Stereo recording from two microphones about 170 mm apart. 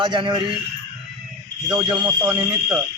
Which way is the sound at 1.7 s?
25° right (ahead or behind).